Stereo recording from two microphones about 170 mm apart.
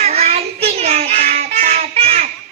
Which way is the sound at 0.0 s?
40° right (ahead or behind).